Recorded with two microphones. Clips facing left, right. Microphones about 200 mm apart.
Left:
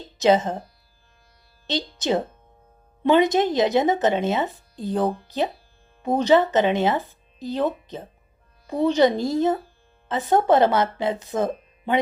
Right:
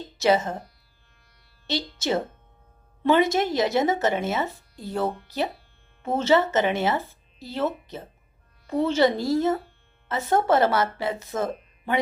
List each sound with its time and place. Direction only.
0.2 s speech: 20° left (ahead or behind)
1.6 s a woman's voice: 20° left (ahead or behind)